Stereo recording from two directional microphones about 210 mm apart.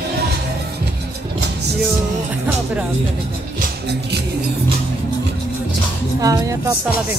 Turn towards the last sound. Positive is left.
turn(degrees=-15)  # may be behind; listen again after turning